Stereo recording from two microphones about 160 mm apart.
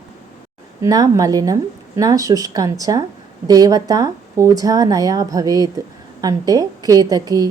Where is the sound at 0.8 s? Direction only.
20° right (ahead or behind).